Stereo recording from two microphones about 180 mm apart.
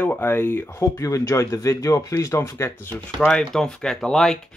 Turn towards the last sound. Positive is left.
turn(degrees=0)  # may be behind; listen again after turning